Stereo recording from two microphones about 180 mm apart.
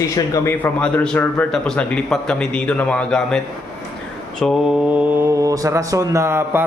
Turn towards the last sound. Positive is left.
turn(degrees=-15)  # may be behind; listen again after turning